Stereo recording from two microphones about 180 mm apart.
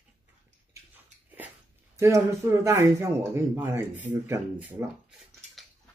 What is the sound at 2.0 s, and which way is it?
Speech, 15° right (ahead or behind).